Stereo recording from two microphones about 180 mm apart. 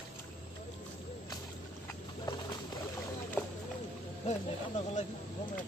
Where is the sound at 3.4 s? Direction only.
10° left (ahead or behind).